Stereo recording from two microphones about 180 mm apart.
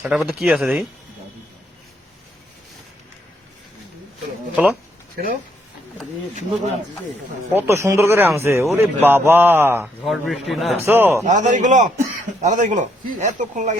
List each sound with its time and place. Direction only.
0.0 s speech: 10° right (ahead or behind)
4.5 s a man's voice: 5° right (ahead or behind)
7.5 s a man's voice: 15° right (ahead or behind)
10.0 s speech: centre (ahead or behind)
10.8 s a man's voice: 10° right (ahead or behind)
11.3 s a man's voice: 45° right (ahead or behind)